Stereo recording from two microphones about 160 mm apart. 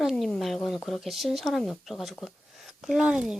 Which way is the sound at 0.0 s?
Centre (ahead or behind).